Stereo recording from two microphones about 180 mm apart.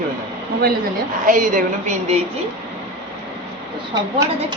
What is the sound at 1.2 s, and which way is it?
Speech, 50° right (ahead or behind).